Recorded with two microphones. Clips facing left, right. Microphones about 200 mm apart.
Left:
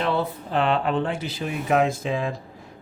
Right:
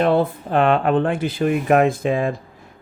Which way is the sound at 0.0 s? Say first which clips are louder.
Right 7 dB; 50° right (ahead or behind).